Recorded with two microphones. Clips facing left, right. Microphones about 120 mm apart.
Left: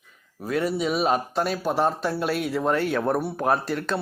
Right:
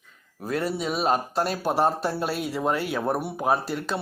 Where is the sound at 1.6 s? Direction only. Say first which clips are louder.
Right 2 dB; 10° right (ahead or behind).